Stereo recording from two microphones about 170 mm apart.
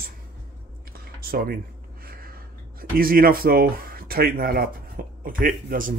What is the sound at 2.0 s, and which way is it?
Speech, 60° right (ahead or behind).